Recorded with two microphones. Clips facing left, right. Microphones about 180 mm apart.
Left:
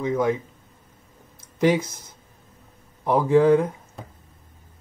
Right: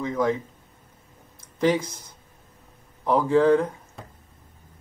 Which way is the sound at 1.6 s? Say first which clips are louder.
Left 2 dB; 10° left (ahead or behind).